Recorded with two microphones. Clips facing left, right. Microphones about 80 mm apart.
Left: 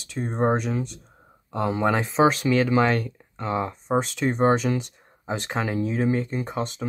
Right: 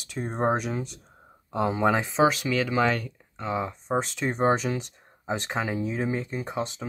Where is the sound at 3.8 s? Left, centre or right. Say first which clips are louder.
Left 5 dB; centre.